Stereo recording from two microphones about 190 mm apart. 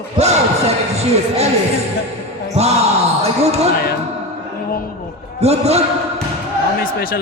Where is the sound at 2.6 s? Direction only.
35° right (ahead or behind).